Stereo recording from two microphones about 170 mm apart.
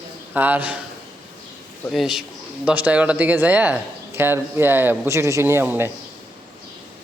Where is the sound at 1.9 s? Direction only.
Centre (ahead or behind).